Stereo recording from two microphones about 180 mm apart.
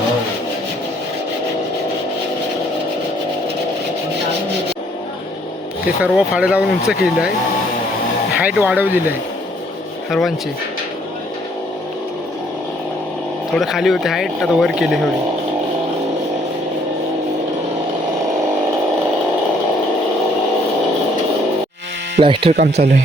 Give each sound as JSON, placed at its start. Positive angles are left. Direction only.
{"t": 6.0, "sound": "speech", "side_deg": -5}
{"t": 8.4, "sound": "speech", "side_deg": -5}
{"t": 10.1, "sound": "speech", "side_deg": 0}
{"t": 13.6, "sound": "speech", "side_deg": 0}
{"t": 22.2, "sound": "speech", "side_deg": -30}
{"t": 22.5, "sound": "speech", "side_deg": -65}